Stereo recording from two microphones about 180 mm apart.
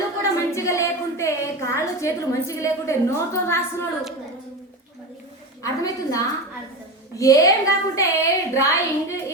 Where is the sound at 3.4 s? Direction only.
15° left (ahead or behind).